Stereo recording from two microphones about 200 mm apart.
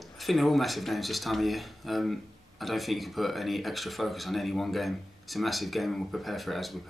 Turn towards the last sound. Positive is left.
turn(degrees=0)  # may be behind; listen again after turning